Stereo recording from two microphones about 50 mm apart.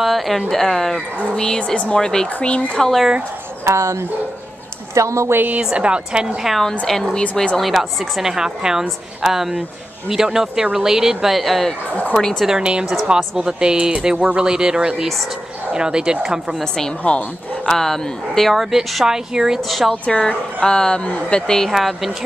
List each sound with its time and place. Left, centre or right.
0.0 s a woman's voice: centre
1.3 s speech: centre
2.8 s a woman's voice: centre
3.6 s speech: right
5.6 s a woman's voice: centre
6.4 s a woman's voice: centre
7.5 s speech: centre
12.2 s speech: centre
12.4 s speech: centre
17.0 s speech: left
17.6 s a woman's voice: centre
19.7 s a woman's voice: centre
20.1 s speech: centre
21.7 s a woman's voice: centre